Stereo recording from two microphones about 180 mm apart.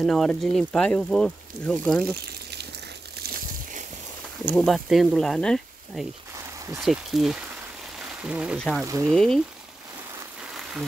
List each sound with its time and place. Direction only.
0.0 s speech: 5° left (ahead or behind)
4.6 s speech: centre (ahead or behind)
8.8 s speech: 15° right (ahead or behind)
9.1 s speech: 5° left (ahead or behind)
10.5 s a sound: centre (ahead or behind)